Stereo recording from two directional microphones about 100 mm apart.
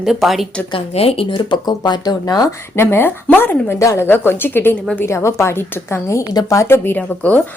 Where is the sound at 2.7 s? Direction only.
25° left (ahead or behind).